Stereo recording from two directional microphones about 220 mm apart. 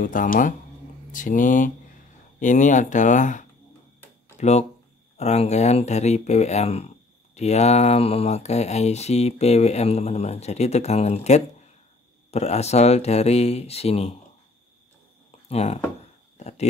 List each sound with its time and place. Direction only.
0.0 s speech: 35° left (ahead or behind)
15.4 s speech: 30° left (ahead or behind)
16.3 s a sound: 30° left (ahead or behind)